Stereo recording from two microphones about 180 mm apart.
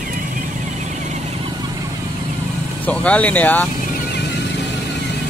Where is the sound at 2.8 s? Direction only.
5° left (ahead or behind).